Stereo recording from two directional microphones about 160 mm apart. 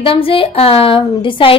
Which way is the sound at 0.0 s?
35° left (ahead or behind).